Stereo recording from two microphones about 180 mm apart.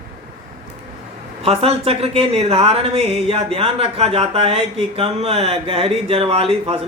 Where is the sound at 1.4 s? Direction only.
35° right (ahead or behind).